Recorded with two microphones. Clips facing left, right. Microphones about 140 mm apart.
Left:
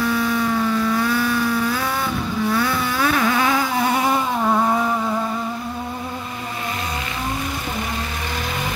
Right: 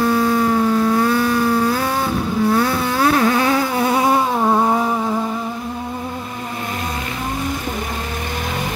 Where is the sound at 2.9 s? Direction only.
35° right (ahead or behind).